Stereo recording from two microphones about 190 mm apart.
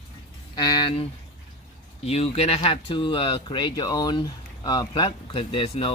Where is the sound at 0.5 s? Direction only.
20° left (ahead or behind).